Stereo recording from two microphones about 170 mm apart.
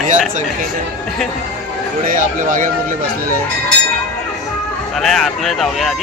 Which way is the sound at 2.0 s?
55° right (ahead or behind).